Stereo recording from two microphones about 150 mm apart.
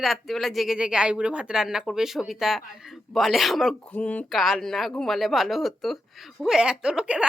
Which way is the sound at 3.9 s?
10° left (ahead or behind).